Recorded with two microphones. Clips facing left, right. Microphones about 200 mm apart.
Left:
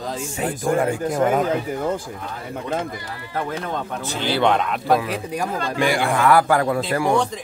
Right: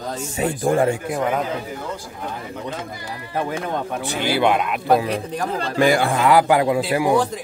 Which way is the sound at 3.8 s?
10° right (ahead or behind).